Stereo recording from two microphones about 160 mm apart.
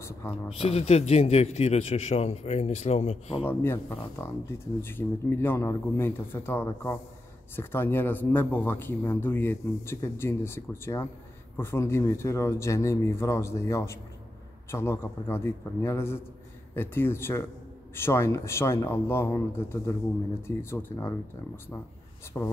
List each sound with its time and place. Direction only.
0.5 s a man's voice: 40° left (ahead or behind)
3.4 s speech: 15° left (ahead or behind)
22.3 s speech: 15° left (ahead or behind)